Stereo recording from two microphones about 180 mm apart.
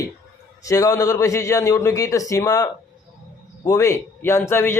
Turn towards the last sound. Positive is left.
turn(degrees=15)  # may be behind; listen again after turning